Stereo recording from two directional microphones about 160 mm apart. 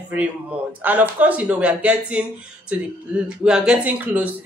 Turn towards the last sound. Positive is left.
turn(degrees=-10)  # may be behind; listen again after turning